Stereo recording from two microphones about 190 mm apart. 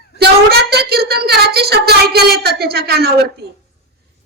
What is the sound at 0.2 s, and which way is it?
Child singing, 55° right (ahead or behind).